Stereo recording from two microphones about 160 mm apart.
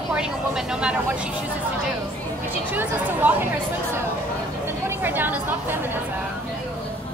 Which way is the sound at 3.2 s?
10° right (ahead or behind).